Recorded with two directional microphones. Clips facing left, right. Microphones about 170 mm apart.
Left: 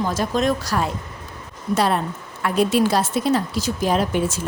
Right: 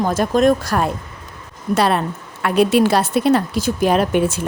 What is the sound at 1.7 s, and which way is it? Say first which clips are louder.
A woman's voice: right 3 dB; 75° right (ahead or behind).